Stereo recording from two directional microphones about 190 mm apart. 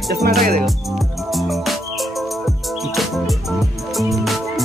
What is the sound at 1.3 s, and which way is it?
Music, centre (ahead or behind).